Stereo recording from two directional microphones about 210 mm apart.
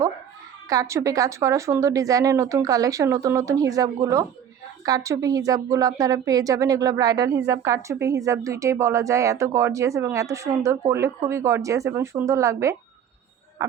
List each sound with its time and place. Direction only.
0.7 s a woman's voice: 15° right (ahead or behind)